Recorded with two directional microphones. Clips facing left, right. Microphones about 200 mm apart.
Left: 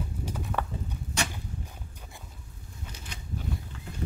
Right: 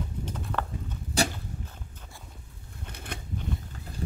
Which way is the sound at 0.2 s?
10° left (ahead or behind).